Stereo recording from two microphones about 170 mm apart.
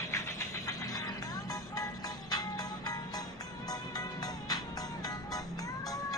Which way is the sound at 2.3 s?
25° left (ahead or behind).